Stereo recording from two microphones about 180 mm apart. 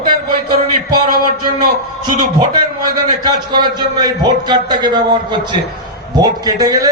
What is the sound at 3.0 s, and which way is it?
A man's voice, 25° right (ahead or behind).